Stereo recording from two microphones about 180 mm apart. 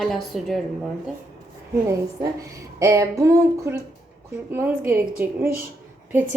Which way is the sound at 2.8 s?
15° right (ahead or behind).